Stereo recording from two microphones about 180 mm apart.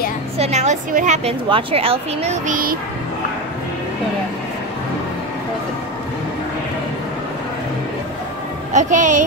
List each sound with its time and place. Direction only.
0.4 s a woman's voice: 40° right (ahead or behind)
2.4 s a woman's voice: 50° right (ahead or behind)
8.7 s a woman's voice: 45° right (ahead or behind)